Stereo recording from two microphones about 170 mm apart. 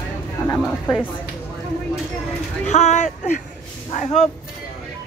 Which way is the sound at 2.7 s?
40° left (ahead or behind).